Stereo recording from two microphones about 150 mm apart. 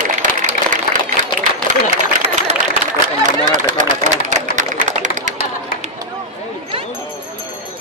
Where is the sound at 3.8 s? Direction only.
55° right (ahead or behind).